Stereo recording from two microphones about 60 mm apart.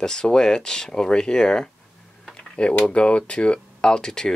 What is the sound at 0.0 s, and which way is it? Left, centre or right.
Speech, centre.